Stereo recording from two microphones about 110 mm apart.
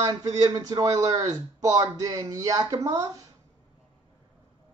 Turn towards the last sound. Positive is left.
turn(degrees=-30)  # may be behind; listen again after turning